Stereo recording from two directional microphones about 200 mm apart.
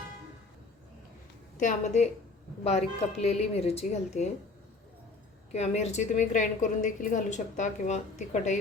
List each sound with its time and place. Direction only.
1.5 s a woman's voice: 35° left (ahead or behind)
5.5 s a woman's voice: 35° left (ahead or behind)